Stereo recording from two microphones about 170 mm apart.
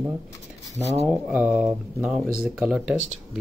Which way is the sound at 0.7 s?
40° left (ahead or behind).